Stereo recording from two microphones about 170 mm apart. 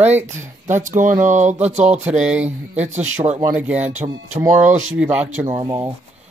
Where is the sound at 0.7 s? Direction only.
45° right (ahead or behind).